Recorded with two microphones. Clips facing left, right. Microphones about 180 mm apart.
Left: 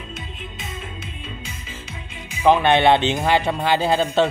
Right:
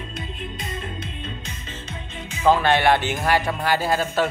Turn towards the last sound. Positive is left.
turn(degrees=25)  # may be behind; listen again after turning